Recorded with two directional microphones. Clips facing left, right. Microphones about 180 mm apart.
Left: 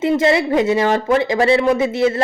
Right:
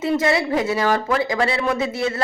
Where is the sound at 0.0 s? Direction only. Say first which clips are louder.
Left 4 dB; 25° left (ahead or behind).